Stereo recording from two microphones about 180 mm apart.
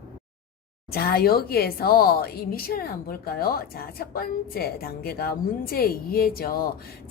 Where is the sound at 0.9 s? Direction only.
60° left (ahead or behind).